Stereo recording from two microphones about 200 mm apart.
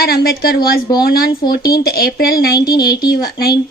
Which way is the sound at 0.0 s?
50° left (ahead or behind).